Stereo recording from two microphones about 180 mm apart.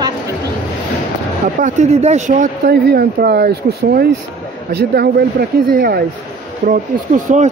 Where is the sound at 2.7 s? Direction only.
60° right (ahead or behind).